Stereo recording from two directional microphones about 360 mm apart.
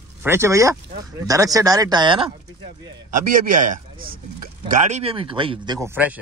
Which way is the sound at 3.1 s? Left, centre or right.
Right.